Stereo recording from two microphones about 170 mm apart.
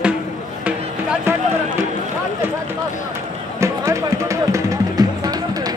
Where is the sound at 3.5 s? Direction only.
15° right (ahead or behind).